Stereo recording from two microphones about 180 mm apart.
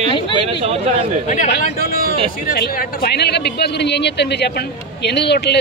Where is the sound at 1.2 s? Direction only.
45° left (ahead or behind).